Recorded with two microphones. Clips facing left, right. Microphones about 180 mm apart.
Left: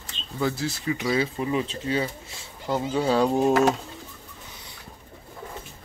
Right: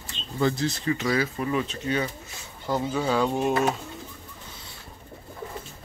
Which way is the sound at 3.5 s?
80° left.